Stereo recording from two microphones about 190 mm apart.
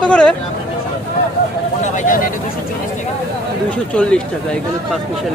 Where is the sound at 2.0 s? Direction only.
45° left (ahead or behind).